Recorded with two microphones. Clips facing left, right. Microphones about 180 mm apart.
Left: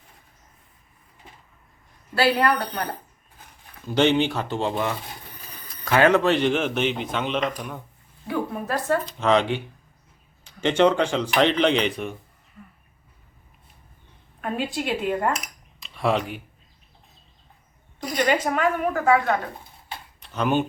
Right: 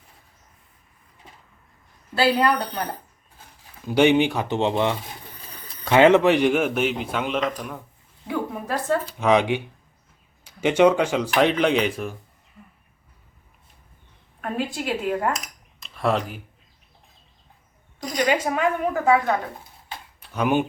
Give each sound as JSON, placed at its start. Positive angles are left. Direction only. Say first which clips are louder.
{"t": 2.1, "sound": "a man's voice", "louder": "right 1 dB", "side_deg": -25}
{"t": 14.4, "sound": "a woman's voice", "louder": "even", "side_deg": 0}
{"t": 15.8, "sound": "a sound", "louder": "even", "side_deg": 0}
{"t": 18.2, "sound": "a man's voice", "louder": "even", "side_deg": -10}
{"t": 20.1, "sound": "tick-tock", "louder": "right 1 dB", "side_deg": -10}